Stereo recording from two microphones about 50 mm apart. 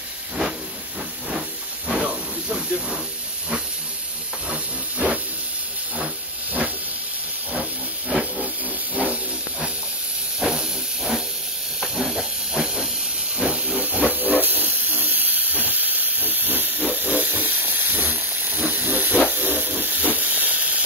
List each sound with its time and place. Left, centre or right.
1.9 s hiss: right
4.5 s steam: right
8.1 s hiss: right
8.9 s a sound: right
10.5 s hiss: centre
13.8 s hiss: right